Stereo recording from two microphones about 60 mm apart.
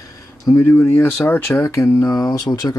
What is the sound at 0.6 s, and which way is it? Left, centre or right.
Speech, left.